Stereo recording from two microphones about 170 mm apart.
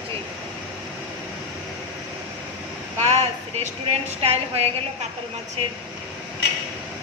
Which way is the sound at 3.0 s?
40° right (ahead or behind).